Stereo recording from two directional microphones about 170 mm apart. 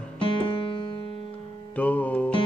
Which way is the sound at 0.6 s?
30° left (ahead or behind).